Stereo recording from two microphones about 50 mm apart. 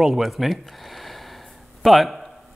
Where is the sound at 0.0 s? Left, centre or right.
Centre.